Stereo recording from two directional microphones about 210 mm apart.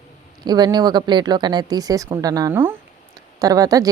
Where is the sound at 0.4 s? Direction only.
20° right (ahead or behind).